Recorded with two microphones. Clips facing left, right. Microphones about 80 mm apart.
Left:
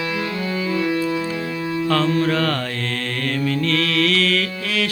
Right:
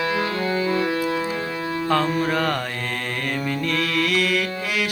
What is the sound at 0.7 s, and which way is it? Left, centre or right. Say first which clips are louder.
Organ: left 1 dB; right.